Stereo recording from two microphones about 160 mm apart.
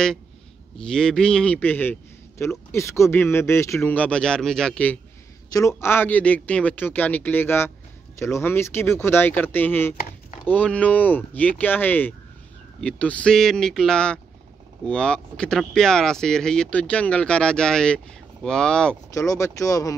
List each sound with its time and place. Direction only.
0.7 s speech: 5° left (ahead or behind)
5.5 s speech: 20° left (ahead or behind)
19.1 s speech: 20° left (ahead or behind)